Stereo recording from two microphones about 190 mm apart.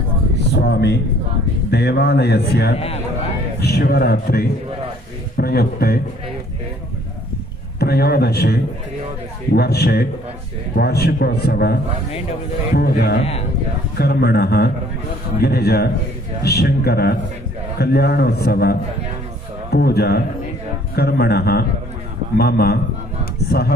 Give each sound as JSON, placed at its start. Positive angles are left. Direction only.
{"t": 0.6, "sound": "a man's voice", "side_deg": 60}
{"t": 2.7, "sound": "a man's voice", "side_deg": 30}
{"t": 3.6, "sound": "a man's voice", "side_deg": 55}
{"t": 7.8, "sound": "a man's voice", "side_deg": 55}
{"t": 9.6, "sound": "a man's voice", "side_deg": 55}